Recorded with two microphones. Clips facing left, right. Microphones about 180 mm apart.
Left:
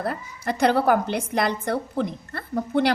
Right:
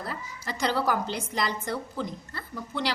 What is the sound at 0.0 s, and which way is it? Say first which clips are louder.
A woman's voice: left 8 dB; 55° left (ahead or behind).